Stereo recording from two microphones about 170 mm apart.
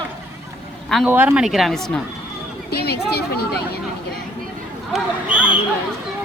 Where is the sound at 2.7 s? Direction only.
70° left (ahead or behind).